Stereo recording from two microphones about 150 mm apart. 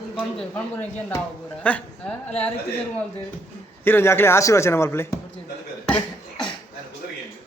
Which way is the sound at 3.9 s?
15° left (ahead or behind).